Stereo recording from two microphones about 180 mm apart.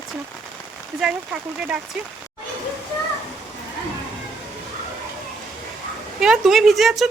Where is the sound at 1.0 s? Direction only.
5° right (ahead or behind).